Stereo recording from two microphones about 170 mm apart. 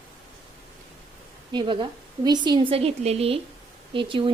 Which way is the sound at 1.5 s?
30° right (ahead or behind).